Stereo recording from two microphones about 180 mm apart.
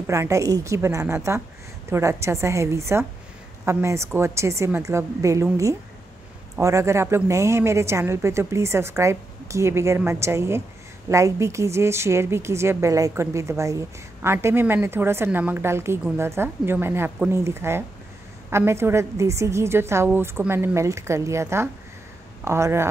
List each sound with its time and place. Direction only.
0.0 s a woman's voice: 15° right (ahead or behind)